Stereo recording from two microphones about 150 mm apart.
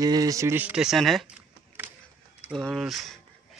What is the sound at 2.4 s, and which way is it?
Speech, centre (ahead or behind).